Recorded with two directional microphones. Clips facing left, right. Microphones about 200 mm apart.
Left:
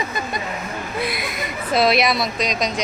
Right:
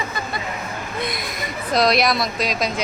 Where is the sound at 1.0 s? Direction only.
5° left (ahead or behind).